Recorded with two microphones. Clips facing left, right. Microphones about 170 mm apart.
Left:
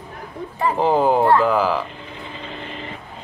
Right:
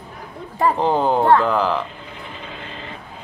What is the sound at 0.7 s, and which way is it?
Speech, 5° left (ahead or behind).